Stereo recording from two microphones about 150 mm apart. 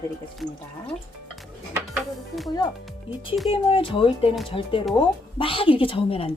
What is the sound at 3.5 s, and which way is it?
Speech, 35° left (ahead or behind).